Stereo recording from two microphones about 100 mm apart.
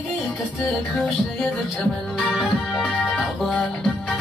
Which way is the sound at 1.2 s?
5° left (ahead or behind).